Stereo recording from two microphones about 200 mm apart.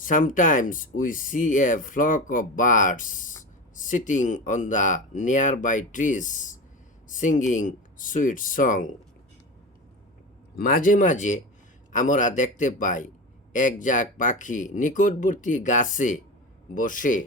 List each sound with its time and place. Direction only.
0.0 s speech: 40° left (ahead or behind)
10.6 s speech: 45° left (ahead or behind)